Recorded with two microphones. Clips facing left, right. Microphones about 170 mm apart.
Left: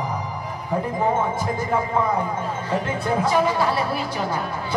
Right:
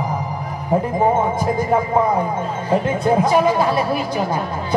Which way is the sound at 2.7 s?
15° right (ahead or behind).